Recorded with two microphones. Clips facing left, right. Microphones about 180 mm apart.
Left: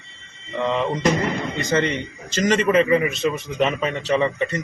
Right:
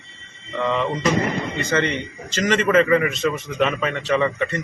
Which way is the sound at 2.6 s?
15° left (ahead or behind).